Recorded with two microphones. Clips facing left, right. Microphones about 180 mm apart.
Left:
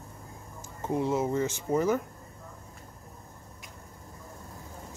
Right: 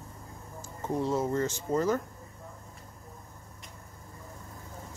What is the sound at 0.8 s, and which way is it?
Speech, 15° left (ahead or behind).